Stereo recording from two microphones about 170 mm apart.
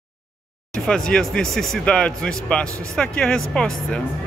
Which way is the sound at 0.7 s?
5° left (ahead or behind).